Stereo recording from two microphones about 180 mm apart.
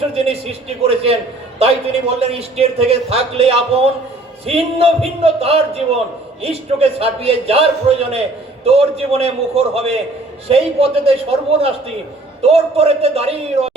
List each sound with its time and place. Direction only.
0.1 s speech: 35° right (ahead or behind)